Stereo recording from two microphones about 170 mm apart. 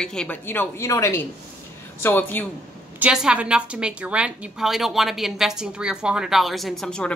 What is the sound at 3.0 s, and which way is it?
A woman's voice, 5° right (ahead or behind).